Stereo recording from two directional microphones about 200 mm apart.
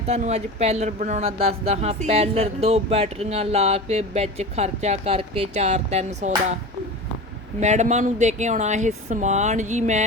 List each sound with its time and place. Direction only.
0.1 s speech: 30° right (ahead or behind)
7.6 s speech: 35° right (ahead or behind)